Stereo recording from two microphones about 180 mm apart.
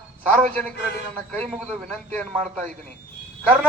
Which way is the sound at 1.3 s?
5° left (ahead or behind).